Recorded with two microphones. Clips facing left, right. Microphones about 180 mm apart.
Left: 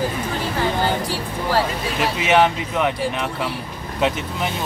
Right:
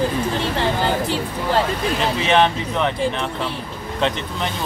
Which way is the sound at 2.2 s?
10° left (ahead or behind).